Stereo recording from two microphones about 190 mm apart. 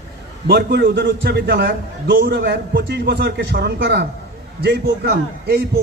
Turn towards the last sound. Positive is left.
turn(degrees=-60)  # may be behind; listen again after turning